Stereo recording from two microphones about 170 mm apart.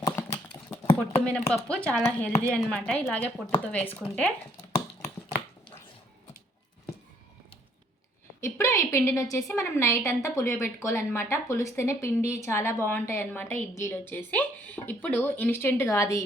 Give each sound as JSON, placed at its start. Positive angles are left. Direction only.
{"t": 0.0, "sound": "typing", "side_deg": 20}
{"t": 1.2, "sound": "speech", "side_deg": 5}
{"t": 8.4, "sound": "speech", "side_deg": 15}